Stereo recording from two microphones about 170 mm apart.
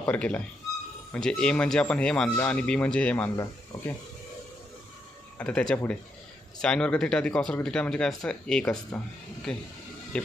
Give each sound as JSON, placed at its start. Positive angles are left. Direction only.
{"t": 0.0, "sound": "speech", "side_deg": 5}
{"t": 3.7, "sound": "speech", "side_deg": 20}
{"t": 5.4, "sound": "speech", "side_deg": 5}